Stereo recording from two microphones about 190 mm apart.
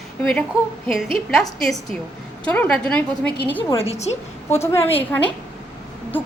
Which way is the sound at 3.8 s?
35° left (ahead or behind).